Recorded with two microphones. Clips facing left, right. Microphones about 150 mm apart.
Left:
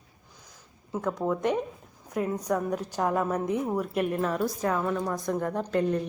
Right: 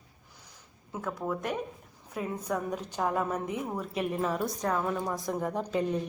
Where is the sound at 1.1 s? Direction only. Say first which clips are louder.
Left 6 dB; 15° left (ahead or behind).